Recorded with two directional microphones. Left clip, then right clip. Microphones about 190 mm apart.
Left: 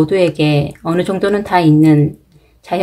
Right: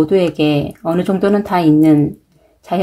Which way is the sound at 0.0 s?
40° right (ahead or behind).